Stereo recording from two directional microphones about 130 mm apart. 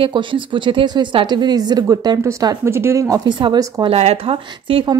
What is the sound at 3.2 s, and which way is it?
A woman's voice, 35° right (ahead or behind).